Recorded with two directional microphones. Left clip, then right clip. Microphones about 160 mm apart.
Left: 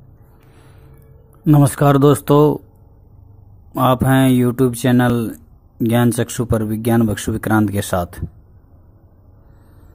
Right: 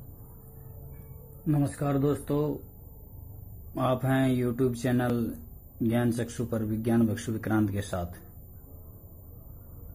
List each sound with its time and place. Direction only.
1.4 s speech: 50° left (ahead or behind)
3.7 s speech: 40° left (ahead or behind)